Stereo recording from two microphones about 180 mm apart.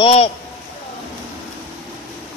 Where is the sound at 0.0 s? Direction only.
35° left (ahead or behind).